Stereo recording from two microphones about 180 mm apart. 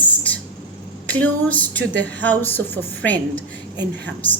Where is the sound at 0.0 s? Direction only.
10° left (ahead or behind).